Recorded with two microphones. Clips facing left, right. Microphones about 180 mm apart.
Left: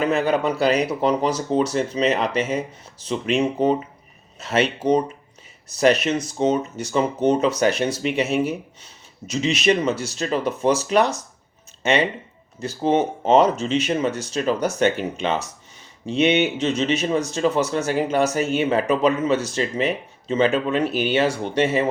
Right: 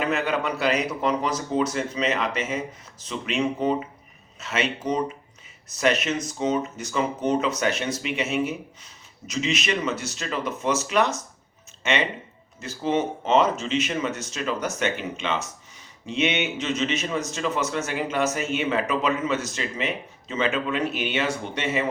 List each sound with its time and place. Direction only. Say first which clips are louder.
0.0 s speech: left 5 dB; 35° left (ahead or behind)